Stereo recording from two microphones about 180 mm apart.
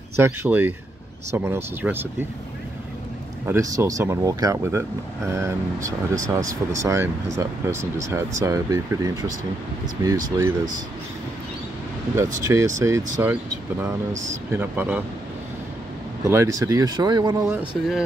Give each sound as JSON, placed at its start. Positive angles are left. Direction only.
{"t": 0.2, "sound": "speech", "side_deg": -10}
{"t": 3.4, "sound": "speech", "side_deg": -15}
{"t": 12.2, "sound": "speech", "side_deg": -15}
{"t": 16.3, "sound": "speech", "side_deg": -15}
{"t": 17.5, "sound": "speech", "side_deg": -5}